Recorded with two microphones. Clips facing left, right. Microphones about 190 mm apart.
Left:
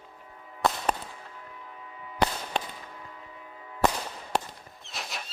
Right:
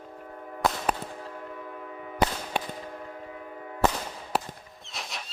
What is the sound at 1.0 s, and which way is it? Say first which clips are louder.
Train: right 7 dB; 55° right (ahead or behind).